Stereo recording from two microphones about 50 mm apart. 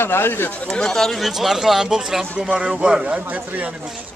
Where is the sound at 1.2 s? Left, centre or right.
Centre; by 3.7 s right.